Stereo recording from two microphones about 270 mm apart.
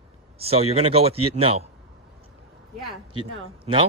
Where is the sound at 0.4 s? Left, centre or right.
Right.